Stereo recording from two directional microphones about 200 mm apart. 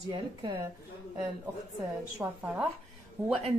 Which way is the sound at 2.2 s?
10° right (ahead or behind).